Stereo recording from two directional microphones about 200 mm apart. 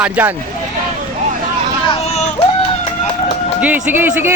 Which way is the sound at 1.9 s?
30° left (ahead or behind).